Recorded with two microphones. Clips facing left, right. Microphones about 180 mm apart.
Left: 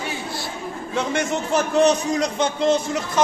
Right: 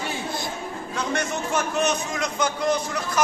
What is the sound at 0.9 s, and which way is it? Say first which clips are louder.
Speech: left 4 dB; 25° left (ahead or behind).